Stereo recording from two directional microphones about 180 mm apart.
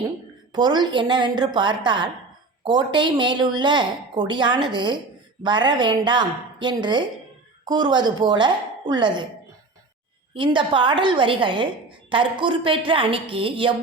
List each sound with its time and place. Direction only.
0.5 s a woman's voice: 25° right (ahead or behind)
10.3 s a woman's voice: 25° right (ahead or behind)